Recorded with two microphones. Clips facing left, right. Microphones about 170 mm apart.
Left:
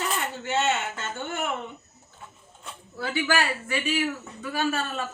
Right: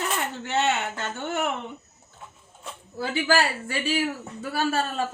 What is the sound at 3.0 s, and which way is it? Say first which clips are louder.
Speech: right 3 dB; 35° right (ahead or behind).